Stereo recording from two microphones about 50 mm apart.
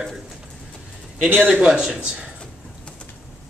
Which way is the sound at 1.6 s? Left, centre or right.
Centre.